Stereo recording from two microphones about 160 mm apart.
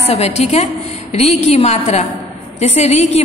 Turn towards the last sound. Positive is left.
turn(degrees=45)  # may be behind; listen again after turning